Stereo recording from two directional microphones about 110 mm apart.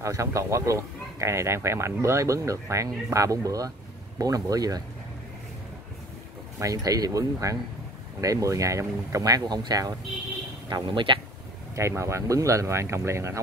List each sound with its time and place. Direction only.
0.0 s speech: 30° right (ahead or behind)
6.6 s speech: 35° right (ahead or behind)
11.7 s speech: 25° right (ahead or behind)